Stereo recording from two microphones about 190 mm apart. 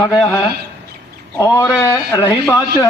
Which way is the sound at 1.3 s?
15° left (ahead or behind).